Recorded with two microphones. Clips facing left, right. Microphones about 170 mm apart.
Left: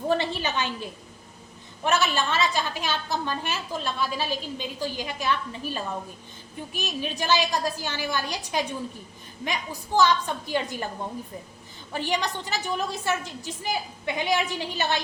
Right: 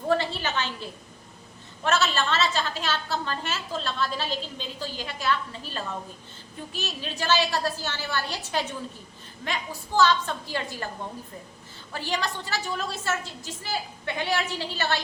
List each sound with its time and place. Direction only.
0.1 s a woman's voice: 15° left (ahead or behind)
11.9 s a woman's voice: 20° left (ahead or behind)